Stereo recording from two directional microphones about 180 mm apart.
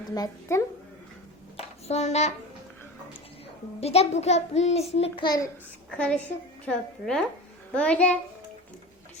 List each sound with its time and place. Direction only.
0.1 s a woman's voice: 15° left (ahead or behind)
1.5 s a sound: 40° left (ahead or behind)
3.8 s a child's voice: 35° left (ahead or behind)
5.9 s a woman's voice: 5° left (ahead or behind)